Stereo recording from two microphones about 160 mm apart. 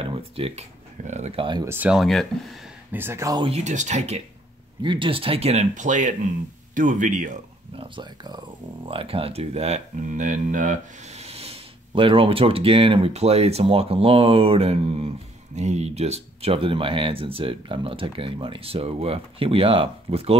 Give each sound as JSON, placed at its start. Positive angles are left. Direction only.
{"t": 0.0, "sound": "speech", "side_deg": -35}
{"t": 1.6, "sound": "speech", "side_deg": -15}
{"t": 2.9, "sound": "speech", "side_deg": -15}
{"t": 3.4, "sound": "speech", "side_deg": -45}
{"t": 4.8, "sound": "speech", "side_deg": -30}
{"t": 7.7, "sound": "speech", "side_deg": -30}